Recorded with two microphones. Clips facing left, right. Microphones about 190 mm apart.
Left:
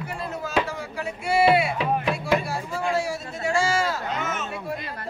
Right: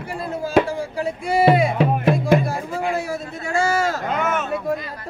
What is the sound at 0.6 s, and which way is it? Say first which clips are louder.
Music: right 7 dB; 35° right (ahead or behind).